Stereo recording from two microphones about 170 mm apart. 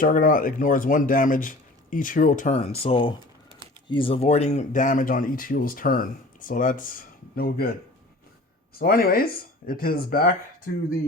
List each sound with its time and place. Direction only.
0.0 s speech: 55° left (ahead or behind)
8.8 s speech: 60° left (ahead or behind)